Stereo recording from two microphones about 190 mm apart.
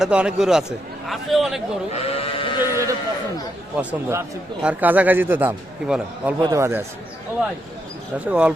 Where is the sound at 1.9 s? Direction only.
30° left (ahead or behind).